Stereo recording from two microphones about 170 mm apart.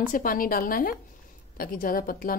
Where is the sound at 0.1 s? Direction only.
55° left (ahead or behind).